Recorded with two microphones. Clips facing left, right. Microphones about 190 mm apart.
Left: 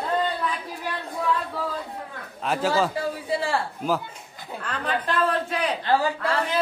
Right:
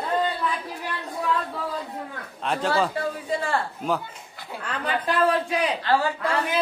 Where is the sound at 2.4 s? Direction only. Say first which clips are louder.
Left 1 dB; 5° left (ahead or behind).